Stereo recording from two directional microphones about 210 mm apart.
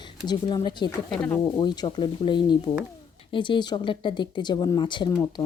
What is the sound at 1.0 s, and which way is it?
Speech, 5° left (ahead or behind).